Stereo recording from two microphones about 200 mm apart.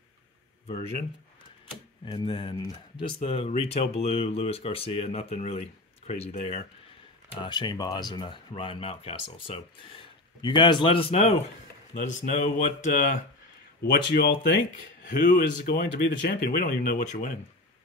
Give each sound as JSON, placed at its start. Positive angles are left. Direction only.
{"t": 2.0, "sound": "speech", "side_deg": 25}
{"t": 7.3, "sound": "speech", "side_deg": 20}
{"t": 13.8, "sound": "speech", "side_deg": 50}